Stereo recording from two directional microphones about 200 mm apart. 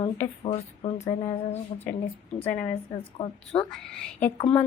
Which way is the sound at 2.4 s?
10° left (ahead or behind).